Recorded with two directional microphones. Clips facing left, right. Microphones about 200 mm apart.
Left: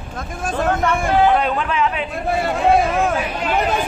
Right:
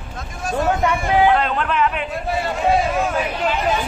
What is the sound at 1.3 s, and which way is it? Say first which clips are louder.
Speech: even; 5° left (ahead or behind).